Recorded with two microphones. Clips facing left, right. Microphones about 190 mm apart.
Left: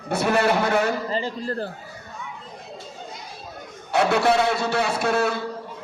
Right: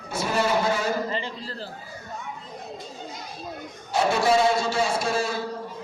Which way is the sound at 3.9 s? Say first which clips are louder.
Left 2 dB; 65° left (ahead or behind).